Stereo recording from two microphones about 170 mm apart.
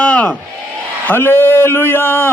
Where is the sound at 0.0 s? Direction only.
10° left (ahead or behind).